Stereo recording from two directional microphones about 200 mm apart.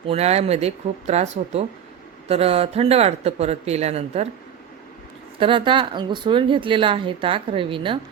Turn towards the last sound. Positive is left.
turn(degrees=-25)  # may be behind; listen again after turning